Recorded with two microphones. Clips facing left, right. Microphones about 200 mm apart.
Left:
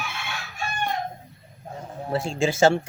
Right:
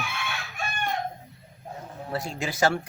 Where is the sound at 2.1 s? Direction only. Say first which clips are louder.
Left 7 dB; 25° left (ahead or behind).